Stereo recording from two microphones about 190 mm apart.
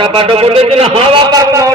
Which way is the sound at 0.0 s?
30° right (ahead or behind).